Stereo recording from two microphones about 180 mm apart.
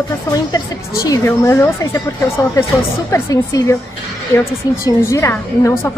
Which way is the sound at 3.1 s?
20° left (ahead or behind).